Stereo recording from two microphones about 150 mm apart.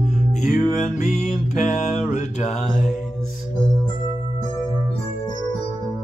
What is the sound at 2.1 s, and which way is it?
Mantra, 55° left (ahead or behind).